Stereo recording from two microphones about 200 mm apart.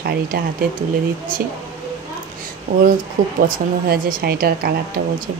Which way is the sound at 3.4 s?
45° right (ahead or behind).